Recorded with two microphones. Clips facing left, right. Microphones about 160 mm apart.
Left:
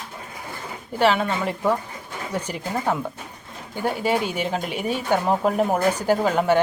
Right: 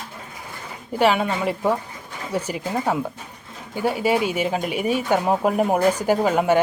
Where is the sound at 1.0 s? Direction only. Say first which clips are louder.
Right 1 dB; 10° right (ahead or behind).